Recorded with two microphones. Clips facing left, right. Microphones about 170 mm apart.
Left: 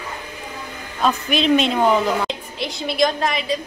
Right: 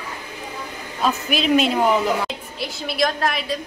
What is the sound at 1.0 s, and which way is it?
A woman's voice, 5° right (ahead or behind).